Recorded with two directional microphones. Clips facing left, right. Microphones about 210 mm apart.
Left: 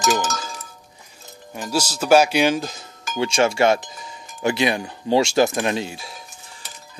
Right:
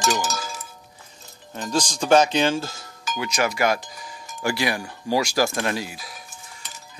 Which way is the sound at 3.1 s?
30° left (ahead or behind).